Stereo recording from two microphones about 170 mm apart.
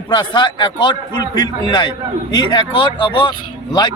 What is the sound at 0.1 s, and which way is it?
Speech, 25° left (ahead or behind).